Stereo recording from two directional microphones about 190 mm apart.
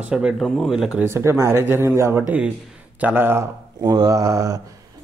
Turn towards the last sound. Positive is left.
turn(degrees=-15)  # may be behind; listen again after turning